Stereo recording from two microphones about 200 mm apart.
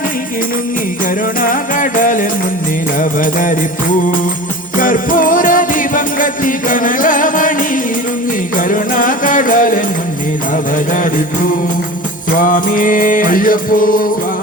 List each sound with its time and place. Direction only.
1.4 s music: 40° left (ahead or behind)
4.8 s music: 40° left (ahead or behind)
8.5 s music: 40° left (ahead or behind)
12.4 s music: 40° left (ahead or behind)